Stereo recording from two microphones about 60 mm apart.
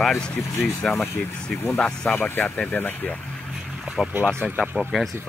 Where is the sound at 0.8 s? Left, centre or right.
Centre.